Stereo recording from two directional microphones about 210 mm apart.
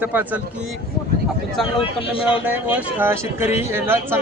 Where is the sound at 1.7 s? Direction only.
25° left (ahead or behind).